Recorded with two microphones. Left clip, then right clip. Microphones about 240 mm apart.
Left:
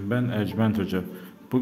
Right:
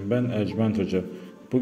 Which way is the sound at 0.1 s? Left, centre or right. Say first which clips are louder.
Right 2 dB; centre.